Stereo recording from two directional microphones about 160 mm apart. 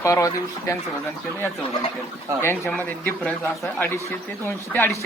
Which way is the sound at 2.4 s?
15° left (ahead or behind).